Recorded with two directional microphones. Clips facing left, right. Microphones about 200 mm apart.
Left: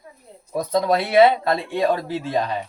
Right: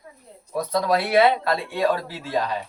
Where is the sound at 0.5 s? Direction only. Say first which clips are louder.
Left 2 dB; 20° left (ahead or behind).